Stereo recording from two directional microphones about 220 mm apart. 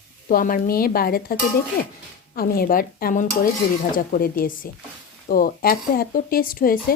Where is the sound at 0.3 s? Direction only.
40° left (ahead or behind).